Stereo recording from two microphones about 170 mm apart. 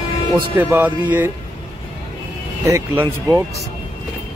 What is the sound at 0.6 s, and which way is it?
Speech, 10° right (ahead or behind).